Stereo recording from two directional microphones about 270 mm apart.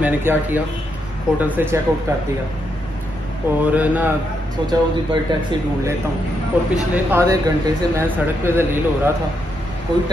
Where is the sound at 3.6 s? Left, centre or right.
Centre.